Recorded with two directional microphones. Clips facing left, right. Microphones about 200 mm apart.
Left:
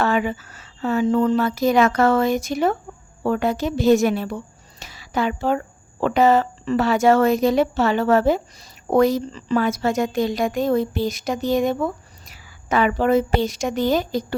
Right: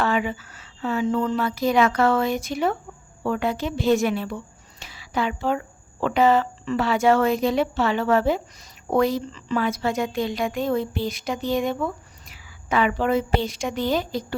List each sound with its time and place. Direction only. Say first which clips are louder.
0.0 s a woman's voice: left 3 dB; 45° left (ahead or behind)
4.8 s a sound: left 3 dB; 40° left (ahead or behind)
6.0 s a woman's voice: left 2 dB; 45° left (ahead or behind)